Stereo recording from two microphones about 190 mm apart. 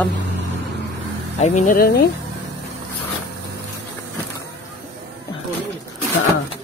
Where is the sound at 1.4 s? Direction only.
40° left (ahead or behind).